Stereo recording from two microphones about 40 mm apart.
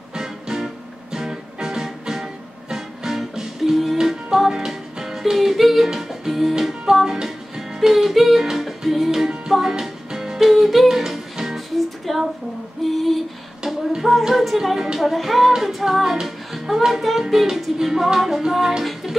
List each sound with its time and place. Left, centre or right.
0.1 s music: centre
11.5 s music: centre
12.8 s female singing: centre
13.9 s singing: centre
15.0 s music: centre